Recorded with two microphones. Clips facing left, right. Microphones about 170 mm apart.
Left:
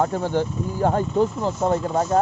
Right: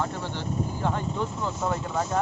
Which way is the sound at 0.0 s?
45° left (ahead or behind).